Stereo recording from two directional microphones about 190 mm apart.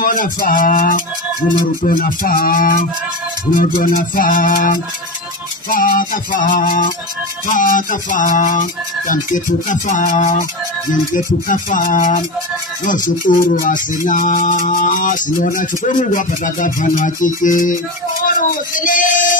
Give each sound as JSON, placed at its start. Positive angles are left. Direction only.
{"t": 0.0, "sound": "speech", "side_deg": 45}
{"t": 11.4, "sound": "speech", "side_deg": 45}
{"t": 13.5, "sound": "speech", "side_deg": 45}
{"t": 18.2, "sound": "a sound", "side_deg": 45}